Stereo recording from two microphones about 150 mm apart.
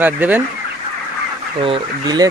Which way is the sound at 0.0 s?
10° right (ahead or behind).